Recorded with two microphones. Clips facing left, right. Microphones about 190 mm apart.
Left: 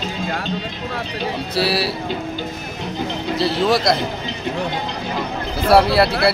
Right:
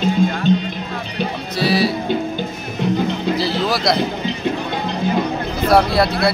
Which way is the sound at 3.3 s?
Centre (ahead or behind).